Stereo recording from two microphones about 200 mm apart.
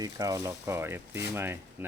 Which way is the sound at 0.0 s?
15° right (ahead or behind).